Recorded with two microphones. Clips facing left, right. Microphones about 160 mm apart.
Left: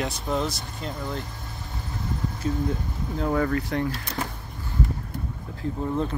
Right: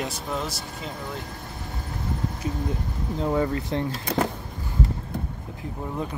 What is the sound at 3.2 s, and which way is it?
Speech, 20° right (ahead or behind).